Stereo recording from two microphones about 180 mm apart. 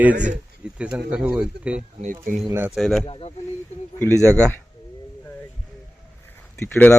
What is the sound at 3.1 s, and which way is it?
Speech, 30° left (ahead or behind).